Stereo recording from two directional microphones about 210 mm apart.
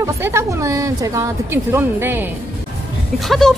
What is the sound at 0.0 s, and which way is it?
A woman's voice, 10° right (ahead or behind).